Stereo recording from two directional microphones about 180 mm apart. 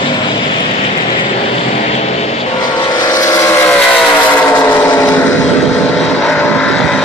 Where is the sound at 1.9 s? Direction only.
35° left (ahead or behind).